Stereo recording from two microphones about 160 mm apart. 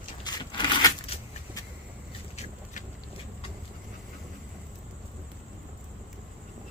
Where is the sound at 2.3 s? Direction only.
50° left (ahead or behind).